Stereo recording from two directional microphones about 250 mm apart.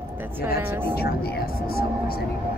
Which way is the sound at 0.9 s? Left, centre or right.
Left.